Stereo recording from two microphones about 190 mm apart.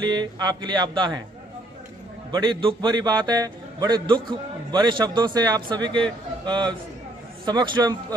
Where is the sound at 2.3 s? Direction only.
25° right (ahead or behind).